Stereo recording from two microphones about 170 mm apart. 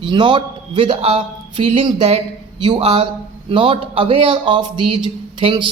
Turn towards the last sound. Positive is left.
turn(degrees=-30)  # may be behind; listen again after turning